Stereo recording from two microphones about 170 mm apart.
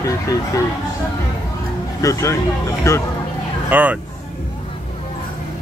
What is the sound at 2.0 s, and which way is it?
Speech, 20° left (ahead or behind).